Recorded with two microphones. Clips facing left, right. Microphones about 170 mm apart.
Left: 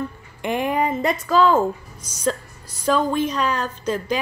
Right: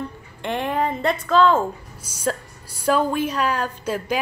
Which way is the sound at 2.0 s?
10° right (ahead or behind).